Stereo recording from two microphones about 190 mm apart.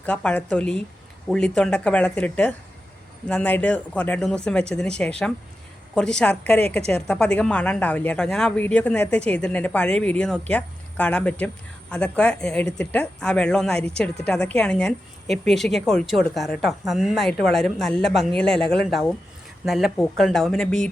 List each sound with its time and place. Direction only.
0.0 s a woman's voice: 5° left (ahead or behind)